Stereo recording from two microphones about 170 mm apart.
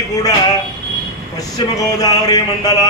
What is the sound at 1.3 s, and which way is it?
A man's voice, 20° left (ahead or behind).